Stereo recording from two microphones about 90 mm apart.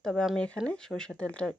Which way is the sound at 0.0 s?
5° left (ahead or behind).